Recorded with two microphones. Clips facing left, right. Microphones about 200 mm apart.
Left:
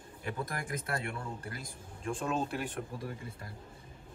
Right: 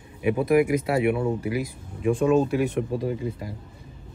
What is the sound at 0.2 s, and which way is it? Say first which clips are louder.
Speech: right 19 dB; 85° right.